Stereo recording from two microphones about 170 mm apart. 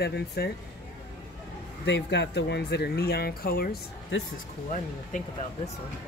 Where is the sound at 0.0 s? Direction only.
70° left (ahead or behind).